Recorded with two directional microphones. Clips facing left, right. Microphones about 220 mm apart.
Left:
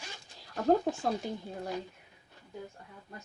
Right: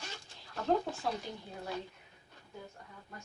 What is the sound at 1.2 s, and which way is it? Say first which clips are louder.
Speech: left 7 dB; 45° left (ahead or behind).